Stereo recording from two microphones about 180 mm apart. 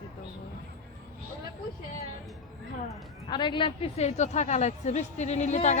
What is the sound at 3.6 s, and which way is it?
A woman's voice, 35° left (ahead or behind).